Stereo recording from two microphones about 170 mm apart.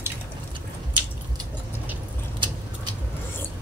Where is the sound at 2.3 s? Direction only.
25° right (ahead or behind).